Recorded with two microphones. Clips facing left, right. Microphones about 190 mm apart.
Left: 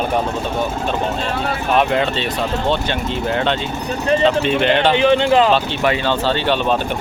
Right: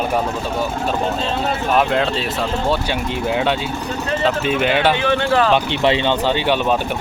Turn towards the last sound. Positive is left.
turn(degrees=-10)  # may be behind; listen again after turning